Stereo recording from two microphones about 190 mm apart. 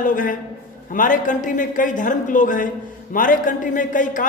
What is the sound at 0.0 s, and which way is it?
A woman's voice, 45° left (ahead or behind).